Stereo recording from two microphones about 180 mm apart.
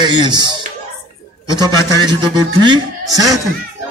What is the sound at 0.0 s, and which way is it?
A man's voice, 25° right (ahead or behind).